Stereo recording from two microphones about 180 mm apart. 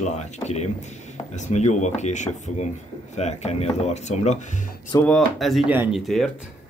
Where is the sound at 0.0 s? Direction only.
40° left (ahead or behind).